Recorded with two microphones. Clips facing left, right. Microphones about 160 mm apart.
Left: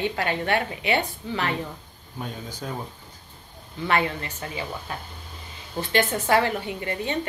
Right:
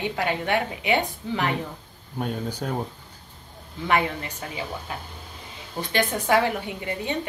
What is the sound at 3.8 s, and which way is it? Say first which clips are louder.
Speech: right 1 dB; 15° right (ahead or behind).